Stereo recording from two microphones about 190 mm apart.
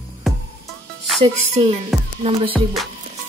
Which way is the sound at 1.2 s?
30° right (ahead or behind).